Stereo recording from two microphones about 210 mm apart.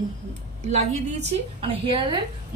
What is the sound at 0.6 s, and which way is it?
A woman's voice, 30° right (ahead or behind).